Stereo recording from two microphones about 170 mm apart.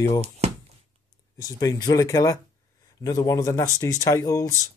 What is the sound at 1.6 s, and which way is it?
Speech, 20° left (ahead or behind).